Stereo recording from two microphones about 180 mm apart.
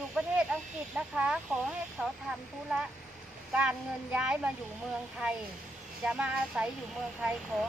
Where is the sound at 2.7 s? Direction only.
5° right (ahead or behind).